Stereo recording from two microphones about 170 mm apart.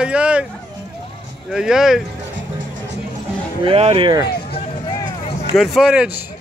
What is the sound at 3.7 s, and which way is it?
Speech, 35° right (ahead or behind).